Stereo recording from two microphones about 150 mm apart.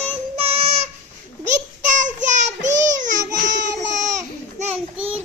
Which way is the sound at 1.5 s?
55° right (ahead or behind).